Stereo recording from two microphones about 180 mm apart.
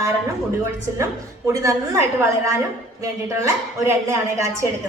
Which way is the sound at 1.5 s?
15° right (ahead or behind).